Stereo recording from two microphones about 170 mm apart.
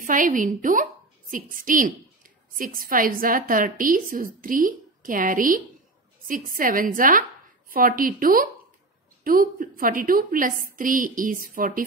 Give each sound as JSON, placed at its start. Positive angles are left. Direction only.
{"t": 0.0, "sound": "a woman's voice", "side_deg": -50}